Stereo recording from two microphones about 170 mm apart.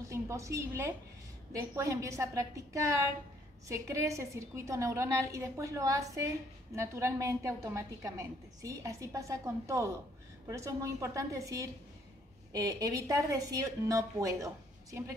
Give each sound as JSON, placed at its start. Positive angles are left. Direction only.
{"t": 0.1, "sound": "a woman's voice", "side_deg": -15}